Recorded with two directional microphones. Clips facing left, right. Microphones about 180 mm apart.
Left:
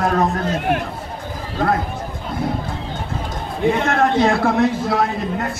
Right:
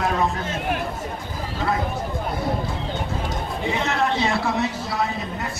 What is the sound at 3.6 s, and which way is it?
A man's voice, 55° left (ahead or behind).